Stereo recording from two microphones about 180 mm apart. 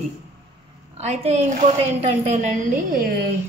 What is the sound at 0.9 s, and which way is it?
A woman's voice, 35° right (ahead or behind).